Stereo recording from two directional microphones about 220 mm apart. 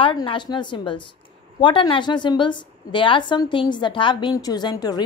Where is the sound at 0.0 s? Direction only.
25° left (ahead or behind).